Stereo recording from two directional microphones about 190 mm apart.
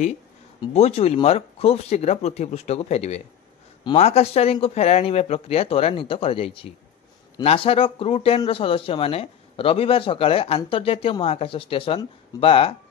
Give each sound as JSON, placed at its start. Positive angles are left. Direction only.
{"t": 0.6, "sound": "a man's voice", "side_deg": 35}